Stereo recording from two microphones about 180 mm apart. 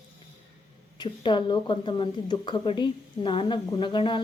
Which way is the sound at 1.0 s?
25° left (ahead or behind).